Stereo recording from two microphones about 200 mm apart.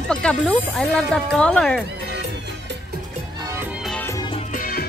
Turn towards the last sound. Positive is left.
turn(degrees=45)  # may be behind; listen again after turning